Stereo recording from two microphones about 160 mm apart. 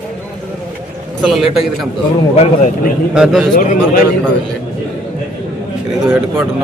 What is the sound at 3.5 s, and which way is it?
Speech, 50° left (ahead or behind).